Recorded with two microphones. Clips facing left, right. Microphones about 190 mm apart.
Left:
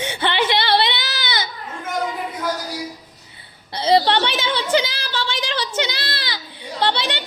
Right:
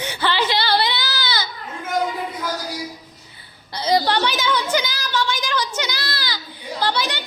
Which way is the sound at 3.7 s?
25° left (ahead or behind).